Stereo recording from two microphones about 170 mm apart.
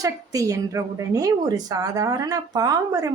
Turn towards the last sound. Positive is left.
turn(degrees=-20)  # may be behind; listen again after turning